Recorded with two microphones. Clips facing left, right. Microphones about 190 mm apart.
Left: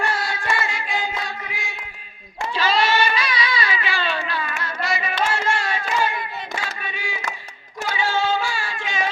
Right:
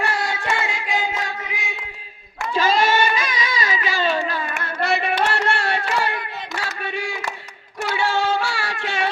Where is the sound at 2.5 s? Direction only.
50° right (ahead or behind); by 7.2 s 65° right (ahead or behind).